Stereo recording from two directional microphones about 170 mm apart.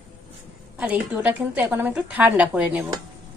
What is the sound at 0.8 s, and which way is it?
A woman's voice, 10° right (ahead or behind).